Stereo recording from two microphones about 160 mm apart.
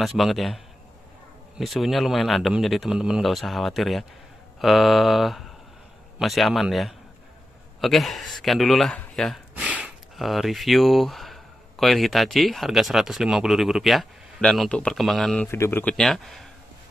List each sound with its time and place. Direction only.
0.0 s speech: centre (ahead or behind)
1.6 s speech: centre (ahead or behind)
15.5 s speech: 15° left (ahead or behind)